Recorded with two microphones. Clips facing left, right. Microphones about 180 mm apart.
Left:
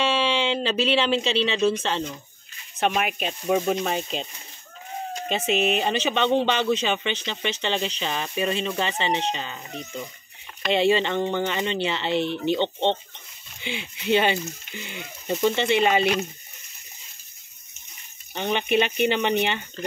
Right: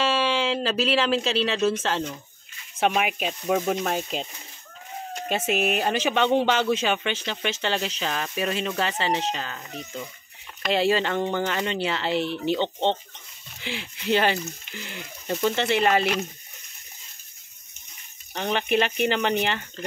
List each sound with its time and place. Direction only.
0.0 s speech: centre (ahead or behind)
5.3 s speech: 5° right (ahead or behind)
10.6 s speech: centre (ahead or behind)
18.3 s speech: centre (ahead or behind)